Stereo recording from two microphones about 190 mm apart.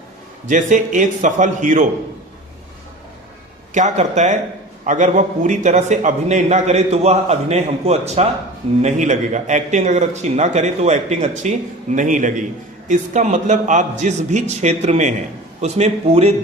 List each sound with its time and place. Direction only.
0.4 s a man's voice: 40° right (ahead or behind)
3.8 s a man's voice: 40° right (ahead or behind)